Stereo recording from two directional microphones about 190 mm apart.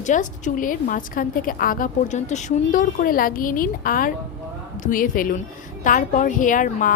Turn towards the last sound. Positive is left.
turn(degrees=45)  # may be behind; listen again after turning